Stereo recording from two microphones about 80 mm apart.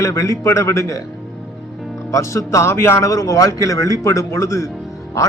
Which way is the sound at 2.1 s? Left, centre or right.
Left.